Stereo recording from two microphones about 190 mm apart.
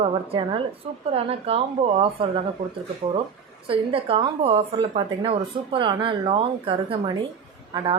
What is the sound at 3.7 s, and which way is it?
A woman's voice, 30° right (ahead or behind).